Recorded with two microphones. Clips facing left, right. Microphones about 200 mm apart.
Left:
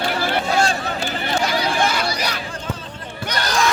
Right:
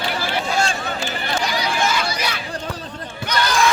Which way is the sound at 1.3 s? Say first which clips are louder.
Left 3 dB; 50° left (ahead or behind).